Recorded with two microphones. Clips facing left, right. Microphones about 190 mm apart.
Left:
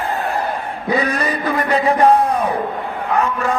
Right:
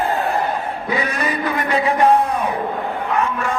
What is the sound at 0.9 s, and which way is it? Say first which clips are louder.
A man's voice: left 4 dB; 35° left (ahead or behind).